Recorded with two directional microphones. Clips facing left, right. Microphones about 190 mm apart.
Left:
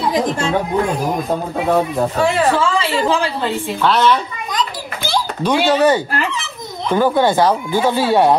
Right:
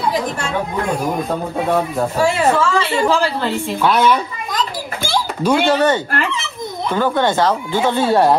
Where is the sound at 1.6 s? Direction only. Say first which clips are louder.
Left 3 dB; centre (ahead or behind).